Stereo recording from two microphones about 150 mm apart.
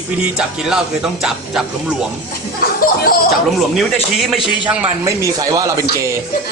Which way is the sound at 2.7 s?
70° left (ahead or behind).